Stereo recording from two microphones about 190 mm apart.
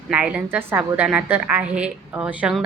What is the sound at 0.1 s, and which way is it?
A woman's voice, 5° right (ahead or behind).